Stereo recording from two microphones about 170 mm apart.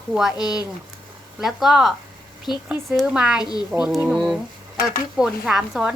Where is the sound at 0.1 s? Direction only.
Centre (ahead or behind).